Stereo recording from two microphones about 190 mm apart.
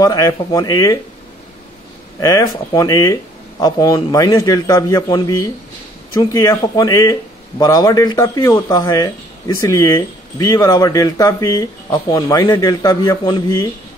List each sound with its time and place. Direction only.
0.0 s speech: 20° left (ahead or behind)
2.1 s a man's voice: 20° left (ahead or behind)